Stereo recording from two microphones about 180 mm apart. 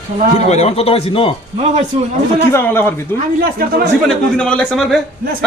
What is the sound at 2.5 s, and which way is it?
Speech, 10° left (ahead or behind).